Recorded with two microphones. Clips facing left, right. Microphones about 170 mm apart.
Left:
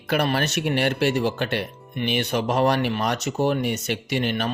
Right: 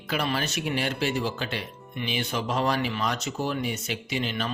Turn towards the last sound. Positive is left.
turn(degrees=60)  # may be behind; listen again after turning